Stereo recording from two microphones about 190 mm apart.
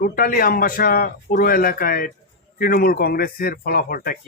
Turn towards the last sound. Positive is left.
turn(degrees=50)  # may be behind; listen again after turning